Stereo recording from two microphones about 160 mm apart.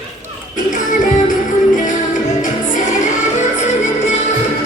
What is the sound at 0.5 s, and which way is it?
Music, 55° left (ahead or behind).